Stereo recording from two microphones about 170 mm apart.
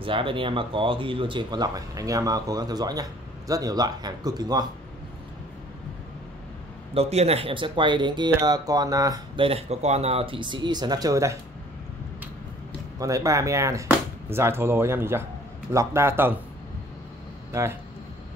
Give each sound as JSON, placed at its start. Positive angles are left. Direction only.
{"t": 0.0, "sound": "speech", "side_deg": -30}
{"t": 6.9, "sound": "speech", "side_deg": -35}
{"t": 9.5, "sound": "speech", "side_deg": -40}
{"t": 13.0, "sound": "speech", "side_deg": -20}
{"t": 17.5, "sound": "speech", "side_deg": -15}